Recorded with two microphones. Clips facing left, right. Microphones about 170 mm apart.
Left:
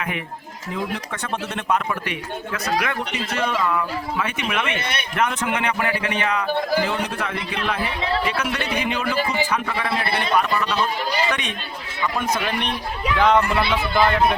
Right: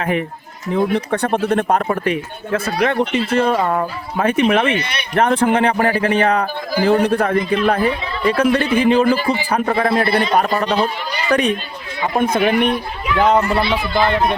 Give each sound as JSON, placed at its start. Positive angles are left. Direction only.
{"t": 0.8, "sound": "speech", "side_deg": -60}
{"t": 2.0, "sound": "speech", "side_deg": -35}
{"t": 3.6, "sound": "speech", "side_deg": -45}
{"t": 9.5, "sound": "a man's voice", "side_deg": -45}
{"t": 12.0, "sound": "a man's voice", "side_deg": -55}
{"t": 13.1, "sound": "speech", "side_deg": -40}